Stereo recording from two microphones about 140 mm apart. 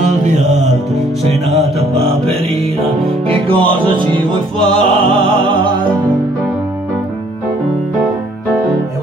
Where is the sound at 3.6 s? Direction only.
35° right (ahead or behind).